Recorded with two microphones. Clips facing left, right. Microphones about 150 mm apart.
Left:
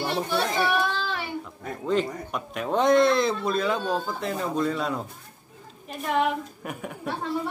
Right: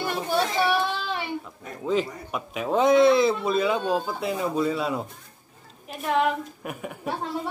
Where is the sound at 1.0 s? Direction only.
20° right (ahead or behind).